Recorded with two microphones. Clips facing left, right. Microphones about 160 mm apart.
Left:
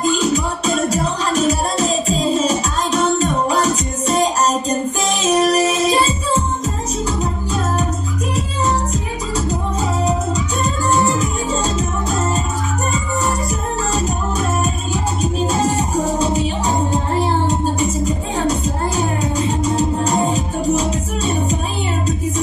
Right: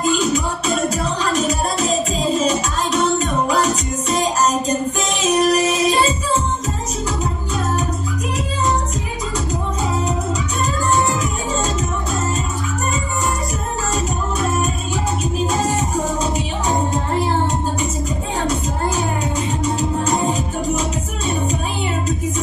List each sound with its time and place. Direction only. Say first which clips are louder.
0.2 s music: left 1 dB; 35° left (ahead or behind)
18.5 s music: left 1 dB; 35° left (ahead or behind)